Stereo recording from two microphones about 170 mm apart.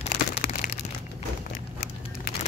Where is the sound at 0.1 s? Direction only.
60° left (ahead or behind).